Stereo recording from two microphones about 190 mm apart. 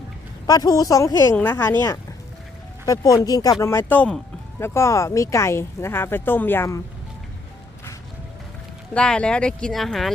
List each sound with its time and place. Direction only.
0.4 s speech: 20° left (ahead or behind)
2.8 s speech: 20° left (ahead or behind)
9.0 s speech: 5° left (ahead or behind)